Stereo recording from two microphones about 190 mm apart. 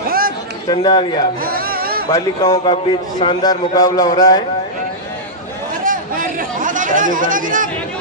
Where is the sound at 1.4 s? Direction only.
50° right (ahead or behind).